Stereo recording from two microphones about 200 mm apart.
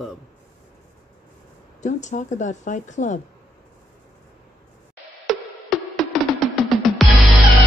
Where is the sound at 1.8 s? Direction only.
35° left (ahead or behind).